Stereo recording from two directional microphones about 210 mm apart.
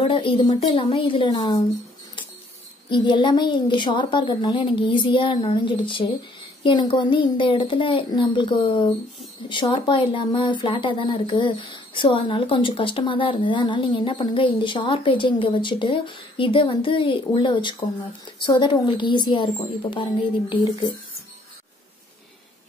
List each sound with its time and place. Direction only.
0.0 s speech: 25° left (ahead or behind)
2.9 s speech: 20° left (ahead or behind)